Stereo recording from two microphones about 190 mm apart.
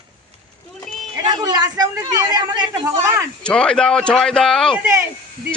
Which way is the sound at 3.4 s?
5° left (ahead or behind).